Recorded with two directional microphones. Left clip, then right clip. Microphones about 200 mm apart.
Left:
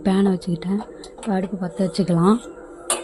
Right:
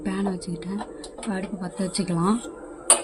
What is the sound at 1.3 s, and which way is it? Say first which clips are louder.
A woman's voice: left 8 dB; 35° left (ahead or behind).